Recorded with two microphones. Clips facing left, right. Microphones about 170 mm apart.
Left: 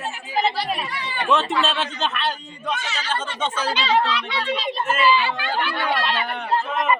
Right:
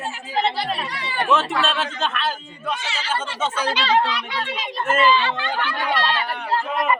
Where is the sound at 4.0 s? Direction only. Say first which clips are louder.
Even; 10° right (ahead or behind).